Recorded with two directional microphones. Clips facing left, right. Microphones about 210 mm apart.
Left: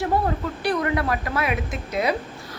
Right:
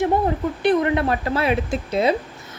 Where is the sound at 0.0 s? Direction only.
20° right (ahead or behind).